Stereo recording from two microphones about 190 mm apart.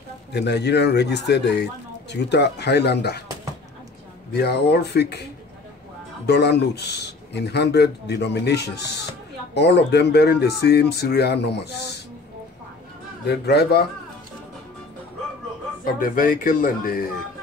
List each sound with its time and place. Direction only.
0.3 s speech: 60° left (ahead or behind)
4.3 s speech: 60° left (ahead or behind)
6.2 s speech: 60° left (ahead or behind)
13.3 s speech: 60° left (ahead or behind)
15.8 s speech: 45° left (ahead or behind)